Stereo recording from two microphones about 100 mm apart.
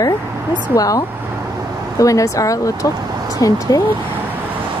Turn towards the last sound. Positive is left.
turn(degrees=35)  # may be behind; listen again after turning